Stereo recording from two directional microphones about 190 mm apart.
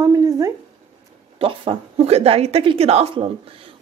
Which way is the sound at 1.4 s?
30° right (ahead or behind).